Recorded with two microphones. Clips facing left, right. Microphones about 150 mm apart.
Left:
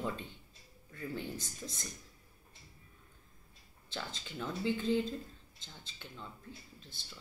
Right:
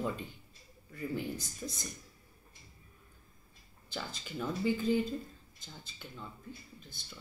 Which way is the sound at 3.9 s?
5° right (ahead or behind).